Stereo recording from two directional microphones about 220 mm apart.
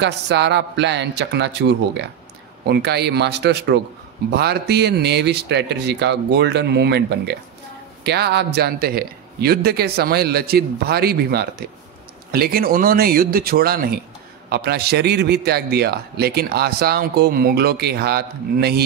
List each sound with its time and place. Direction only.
0.0 s a man's voice: 50° right (ahead or behind)